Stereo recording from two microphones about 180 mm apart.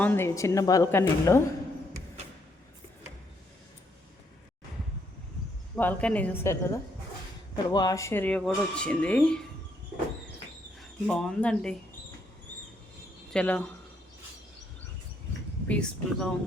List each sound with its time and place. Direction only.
0.0 s speech: 10° left (ahead or behind)
5.7 s speech: 10° left (ahead or behind)
10.8 s speech: 5° left (ahead or behind)
13.3 s speech: 5° left (ahead or behind)
15.6 s speech: 5° left (ahead or behind)